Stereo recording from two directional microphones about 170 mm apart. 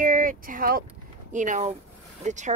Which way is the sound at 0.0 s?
50° right (ahead or behind).